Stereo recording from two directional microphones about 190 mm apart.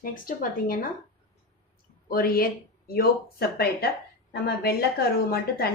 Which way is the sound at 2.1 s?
50° left (ahead or behind).